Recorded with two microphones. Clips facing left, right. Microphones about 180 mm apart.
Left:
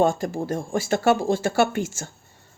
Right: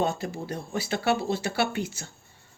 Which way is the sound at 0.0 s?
45° left (ahead or behind).